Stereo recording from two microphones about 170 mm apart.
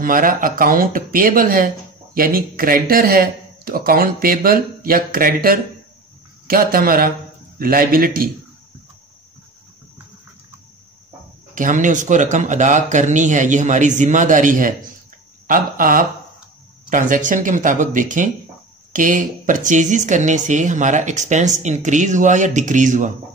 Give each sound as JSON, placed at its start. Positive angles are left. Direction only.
{"t": 0.0, "sound": "speech", "side_deg": -55}
{"t": 11.5, "sound": "speech", "side_deg": -50}